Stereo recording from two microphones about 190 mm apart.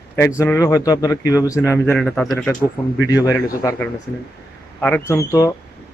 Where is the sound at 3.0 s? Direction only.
20° left (ahead or behind).